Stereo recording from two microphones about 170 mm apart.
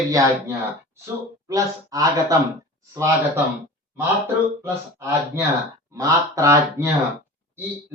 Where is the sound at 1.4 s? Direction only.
20° right (ahead or behind).